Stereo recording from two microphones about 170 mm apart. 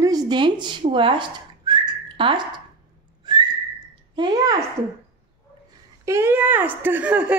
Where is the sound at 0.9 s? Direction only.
30° right (ahead or behind).